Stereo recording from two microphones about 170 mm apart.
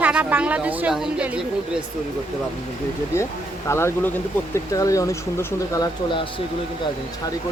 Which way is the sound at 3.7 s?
15° left (ahead or behind).